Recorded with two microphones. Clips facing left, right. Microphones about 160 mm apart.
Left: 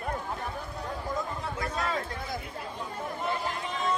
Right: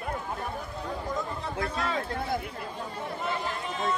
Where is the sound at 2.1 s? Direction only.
55° right (ahead or behind).